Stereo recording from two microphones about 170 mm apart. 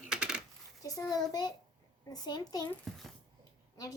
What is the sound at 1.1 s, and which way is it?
Speech, 20° left (ahead or behind).